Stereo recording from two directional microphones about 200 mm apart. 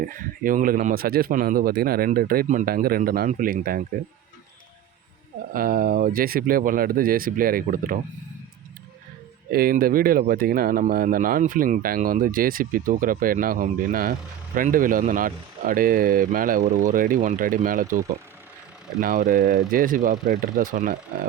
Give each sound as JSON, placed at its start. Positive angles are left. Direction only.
{"t": 0.0, "sound": "speech", "side_deg": -45}
{"t": 5.5, "sound": "speech", "side_deg": -45}
{"t": 9.5, "sound": "speech", "side_deg": -50}
{"t": 18.9, "sound": "speech", "side_deg": -45}